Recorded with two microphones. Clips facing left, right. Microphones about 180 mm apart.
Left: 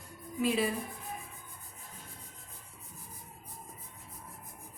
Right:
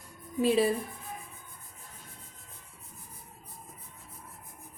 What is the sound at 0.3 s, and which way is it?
Speech, 35° right (ahead or behind).